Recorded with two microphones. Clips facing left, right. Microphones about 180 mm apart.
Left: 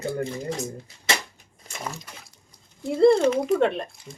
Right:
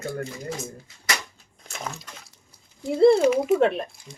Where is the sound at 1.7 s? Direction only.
Centre (ahead or behind).